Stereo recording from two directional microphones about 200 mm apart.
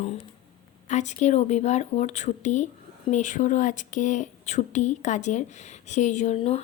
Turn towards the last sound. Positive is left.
turn(degrees=30)  # may be behind; listen again after turning